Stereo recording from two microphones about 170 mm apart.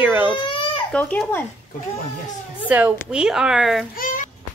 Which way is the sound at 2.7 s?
5° right (ahead or behind).